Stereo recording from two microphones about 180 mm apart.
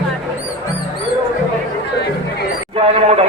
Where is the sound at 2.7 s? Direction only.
30° right (ahead or behind).